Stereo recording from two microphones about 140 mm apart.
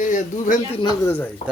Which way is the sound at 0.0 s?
70° left (ahead or behind).